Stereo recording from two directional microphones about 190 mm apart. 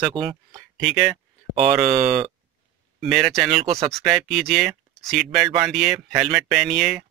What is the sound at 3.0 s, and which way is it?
Speech, centre (ahead or behind).